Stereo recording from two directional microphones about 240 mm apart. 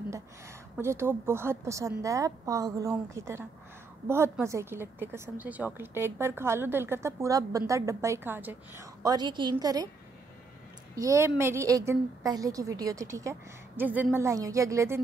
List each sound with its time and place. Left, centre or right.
0.7 s a woman's voice: centre
11.0 s a woman's voice: centre